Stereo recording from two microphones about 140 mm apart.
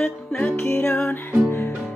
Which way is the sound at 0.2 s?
Centre (ahead or behind).